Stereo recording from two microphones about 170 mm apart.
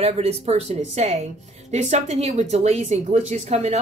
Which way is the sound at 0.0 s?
40° right (ahead or behind).